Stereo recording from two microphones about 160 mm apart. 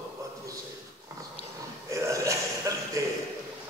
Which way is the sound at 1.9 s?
20° right (ahead or behind).